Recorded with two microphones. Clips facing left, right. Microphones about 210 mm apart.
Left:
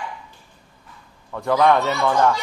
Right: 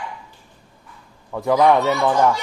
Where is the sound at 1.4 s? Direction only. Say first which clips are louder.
Right 2 dB; 15° right (ahead or behind).